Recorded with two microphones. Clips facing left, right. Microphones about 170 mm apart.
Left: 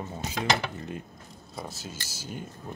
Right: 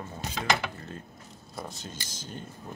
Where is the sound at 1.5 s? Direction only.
Centre (ahead or behind).